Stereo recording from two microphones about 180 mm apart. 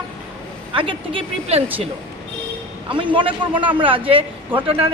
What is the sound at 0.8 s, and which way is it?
Speech, 30° right (ahead or behind).